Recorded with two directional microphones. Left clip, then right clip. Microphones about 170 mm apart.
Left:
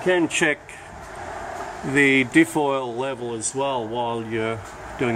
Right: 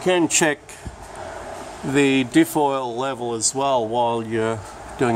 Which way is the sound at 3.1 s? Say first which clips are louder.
Right 4 dB; 30° right (ahead or behind).